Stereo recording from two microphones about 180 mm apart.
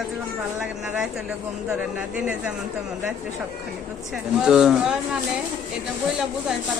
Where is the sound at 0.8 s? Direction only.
Centre (ahead or behind).